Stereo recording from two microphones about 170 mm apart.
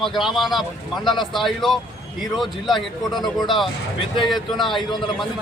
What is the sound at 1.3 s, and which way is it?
Speech, centre (ahead or behind).